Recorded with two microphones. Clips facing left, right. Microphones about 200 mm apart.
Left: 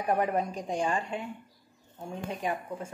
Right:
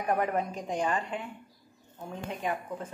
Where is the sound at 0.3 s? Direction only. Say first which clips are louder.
Left 1 dB; 15° left (ahead or behind).